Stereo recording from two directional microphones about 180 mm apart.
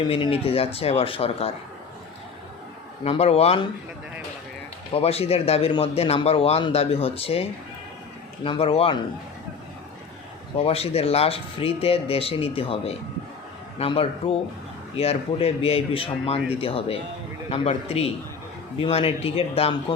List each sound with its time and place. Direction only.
0.0 s a man's voice: 30° left (ahead or behind)
3.0 s a man's voice: 35° left (ahead or behind)
4.9 s a man's voice: 35° left (ahead or behind)
8.4 s a man's voice: 30° left (ahead or behind)
10.6 s a man's voice: 35° left (ahead or behind)